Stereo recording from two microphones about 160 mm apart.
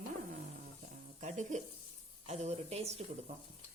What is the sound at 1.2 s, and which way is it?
Speech, 50° right (ahead or behind).